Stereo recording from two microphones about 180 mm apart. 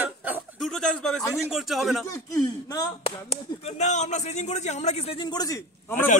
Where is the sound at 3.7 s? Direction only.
40° left (ahead or behind).